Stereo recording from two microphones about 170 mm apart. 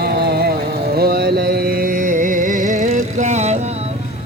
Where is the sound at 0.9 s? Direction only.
65° right (ahead or behind); by 3.6 s 40° right (ahead or behind).